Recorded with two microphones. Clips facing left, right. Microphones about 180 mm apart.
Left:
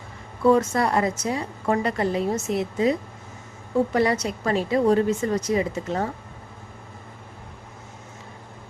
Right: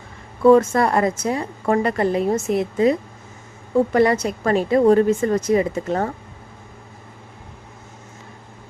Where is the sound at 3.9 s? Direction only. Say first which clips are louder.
Right 5 dB; 50° right (ahead or behind).